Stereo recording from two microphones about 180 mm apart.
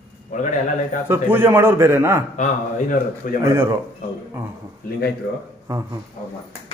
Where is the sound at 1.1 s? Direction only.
10° right (ahead or behind).